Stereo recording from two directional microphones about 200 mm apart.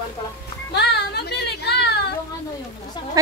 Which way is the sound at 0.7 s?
55° left (ahead or behind).